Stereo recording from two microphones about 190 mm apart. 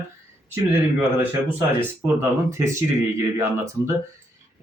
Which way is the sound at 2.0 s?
15° right (ahead or behind).